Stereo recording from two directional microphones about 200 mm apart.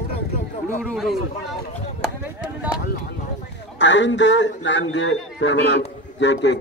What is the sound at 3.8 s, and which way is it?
A man's voice, 65° left (ahead or behind).